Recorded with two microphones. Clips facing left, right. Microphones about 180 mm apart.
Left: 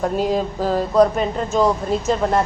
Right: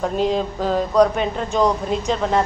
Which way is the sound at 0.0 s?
10° left (ahead or behind).